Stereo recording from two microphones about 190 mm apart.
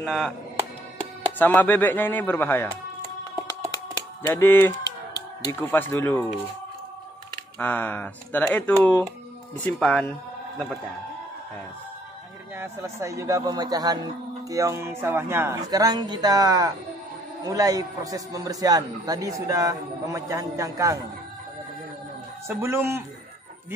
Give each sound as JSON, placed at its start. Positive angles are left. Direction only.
{"t": 0.0, "sound": "speech", "side_deg": 5}
{"t": 1.4, "sound": "speech", "side_deg": 10}
{"t": 3.7, "sound": "a sound", "side_deg": 15}
{"t": 7.5, "sound": "speech", "side_deg": 10}
{"t": 12.5, "sound": "a man's voice", "side_deg": -15}
{"t": 22.5, "sound": "a man's voice", "side_deg": -10}